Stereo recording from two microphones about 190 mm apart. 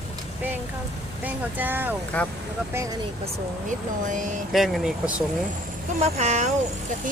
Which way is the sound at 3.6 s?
40° right (ahead or behind).